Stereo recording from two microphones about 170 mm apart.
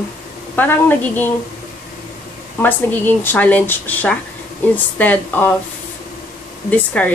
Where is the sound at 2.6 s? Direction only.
10° left (ahead or behind).